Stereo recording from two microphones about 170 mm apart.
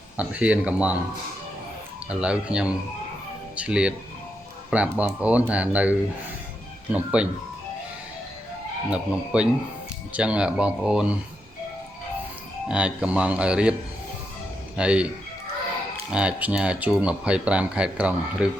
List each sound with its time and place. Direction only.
0.2 s speech: 5° right (ahead or behind)
2.0 s speech: 5° right (ahead or behind)
8.9 s speech: 5° right (ahead or behind)
12.6 s speech: 5° right (ahead or behind)
14.8 s speech: 5° right (ahead or behind)
16.1 s speech: 5° right (ahead or behind)